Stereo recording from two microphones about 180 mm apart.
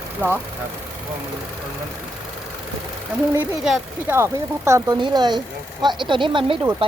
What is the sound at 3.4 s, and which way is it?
Speech, 5° right (ahead or behind).